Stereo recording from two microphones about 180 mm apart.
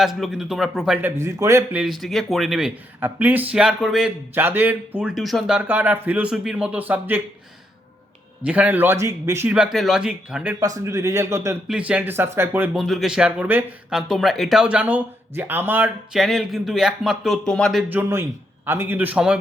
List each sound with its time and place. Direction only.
0.0 s speech: centre (ahead or behind)
1.0 s a man's voice: 15° right (ahead or behind)
1.8 s speech: centre (ahead or behind)
8.4 s a man's voice: 10° right (ahead or behind)
10.6 s a man's voice: 20° right (ahead or behind)